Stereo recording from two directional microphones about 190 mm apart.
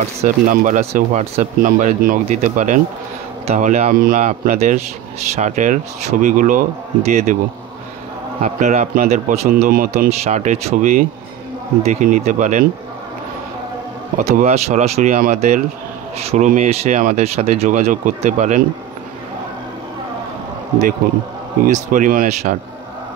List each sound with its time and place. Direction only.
0.2 s speech: 40° right (ahead or behind)
8.4 s speech: 35° right (ahead or behind)
14.1 s speech: 35° right (ahead or behind)
21.6 s speech: 45° right (ahead or behind)